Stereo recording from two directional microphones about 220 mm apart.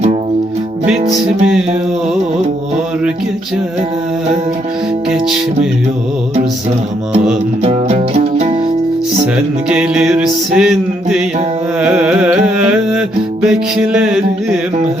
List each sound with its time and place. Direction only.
7.6 s music: 30° right (ahead or behind)
9.2 s music: 5° right (ahead or behind)